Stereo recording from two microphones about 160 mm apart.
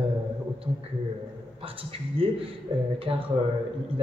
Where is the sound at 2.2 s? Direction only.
35° right (ahead or behind).